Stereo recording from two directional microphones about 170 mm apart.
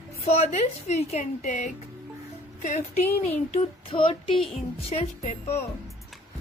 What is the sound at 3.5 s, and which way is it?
A woman's voice, 30° left (ahead or behind).